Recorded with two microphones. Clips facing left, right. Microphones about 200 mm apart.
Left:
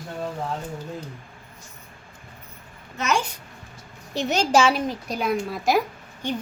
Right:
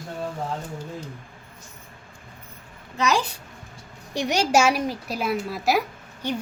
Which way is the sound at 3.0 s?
35° right (ahead or behind).